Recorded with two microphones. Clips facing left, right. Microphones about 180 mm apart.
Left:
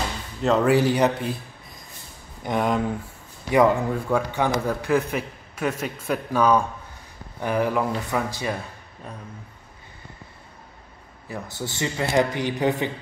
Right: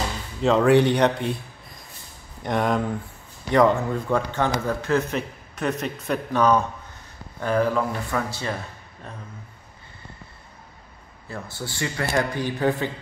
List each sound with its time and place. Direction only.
0.4 s a man's voice: centre (ahead or behind)
11.5 s speech: 20° left (ahead or behind)